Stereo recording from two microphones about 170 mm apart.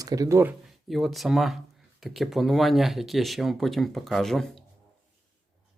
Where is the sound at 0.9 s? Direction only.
Centre (ahead or behind).